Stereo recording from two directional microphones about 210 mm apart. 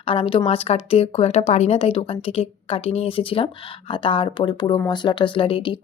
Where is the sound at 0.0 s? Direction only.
25° left (ahead or behind).